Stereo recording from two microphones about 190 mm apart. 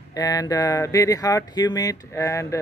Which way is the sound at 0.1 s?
20° left (ahead or behind).